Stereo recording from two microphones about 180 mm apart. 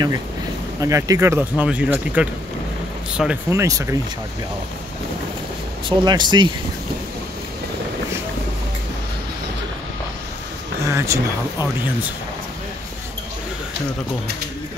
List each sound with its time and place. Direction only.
0.7 s speech: 15° right (ahead or behind)
5.9 s speech: 25° right (ahead or behind)
10.9 s speech: 15° right (ahead or behind)